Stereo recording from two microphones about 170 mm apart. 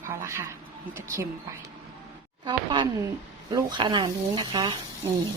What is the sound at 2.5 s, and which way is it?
Speech, 25° right (ahead or behind).